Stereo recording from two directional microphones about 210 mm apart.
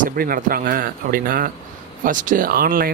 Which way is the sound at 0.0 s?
40° right (ahead or behind).